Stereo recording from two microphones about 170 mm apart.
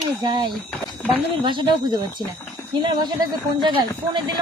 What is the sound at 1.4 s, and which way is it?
Speech, 30° right (ahead or behind).